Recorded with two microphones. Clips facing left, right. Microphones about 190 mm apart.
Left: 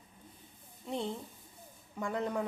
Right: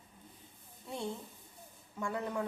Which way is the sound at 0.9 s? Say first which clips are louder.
Left 3 dB; 20° left (ahead or behind).